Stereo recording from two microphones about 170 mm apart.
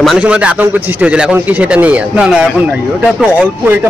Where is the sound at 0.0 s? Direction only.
Centre (ahead or behind).